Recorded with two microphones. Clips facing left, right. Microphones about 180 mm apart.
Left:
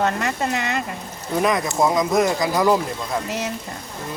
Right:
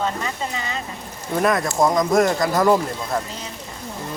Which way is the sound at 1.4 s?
Centre (ahead or behind).